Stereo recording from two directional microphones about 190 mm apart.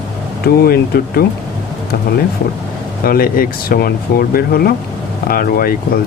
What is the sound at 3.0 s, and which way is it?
Speech, 50° left (ahead or behind).